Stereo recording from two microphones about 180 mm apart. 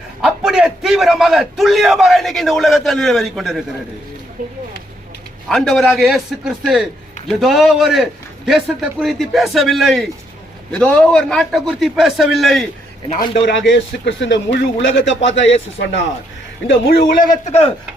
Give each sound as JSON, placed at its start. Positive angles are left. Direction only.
{"t": 0.2, "sound": "a man's voice", "side_deg": -5}
{"t": 5.5, "sound": "a man's voice", "side_deg": 0}
{"t": 13.7, "sound": "speech", "side_deg": 80}
{"t": 16.6, "sound": "a man's voice", "side_deg": 70}
{"t": 17.5, "sound": "speech", "side_deg": 35}